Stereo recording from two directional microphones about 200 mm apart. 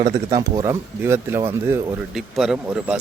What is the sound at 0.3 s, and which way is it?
Speech, 20° right (ahead or behind).